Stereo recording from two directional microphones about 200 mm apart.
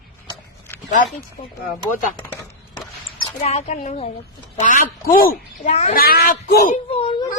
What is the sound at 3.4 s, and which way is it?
A woman's voice, 35° left (ahead or behind).